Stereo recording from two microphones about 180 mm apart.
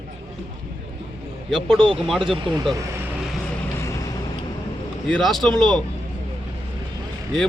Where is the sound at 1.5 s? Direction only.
Centre (ahead or behind).